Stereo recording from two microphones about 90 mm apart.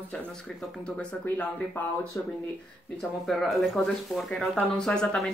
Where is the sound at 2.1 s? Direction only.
35° left (ahead or behind).